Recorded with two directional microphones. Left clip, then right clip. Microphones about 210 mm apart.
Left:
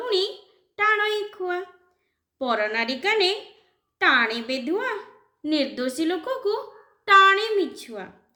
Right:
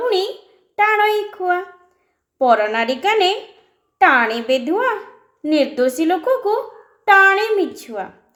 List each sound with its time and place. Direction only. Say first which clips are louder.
0.0 s a sound: right 6 dB; 10° left (ahead or behind)
0.8 s child singing: right 7 dB; 10° left (ahead or behind)
2.4 s a woman's voice: right 9 dB; 10° left (ahead or behind)